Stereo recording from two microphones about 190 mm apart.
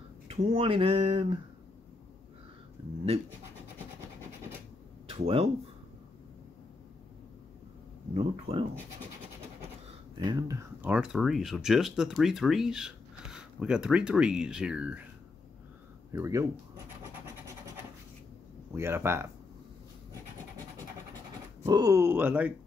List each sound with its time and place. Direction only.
0.3 s speech: 30° right (ahead or behind)
2.8 s a sound: 25° right (ahead or behind)
5.1 s speech: 30° right (ahead or behind)
8.1 s speech: 30° right (ahead or behind)
10.1 s speech: 20° right (ahead or behind)
16.1 s speech: 15° right (ahead or behind)
18.7 s speech: 15° right (ahead or behind)
21.6 s speech: 20° right (ahead or behind)